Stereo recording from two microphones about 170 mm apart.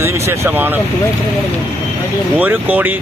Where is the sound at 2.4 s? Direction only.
10° right (ahead or behind).